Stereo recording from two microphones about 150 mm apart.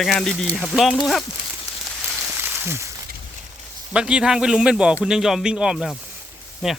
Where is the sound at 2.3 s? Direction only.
15° right (ahead or behind).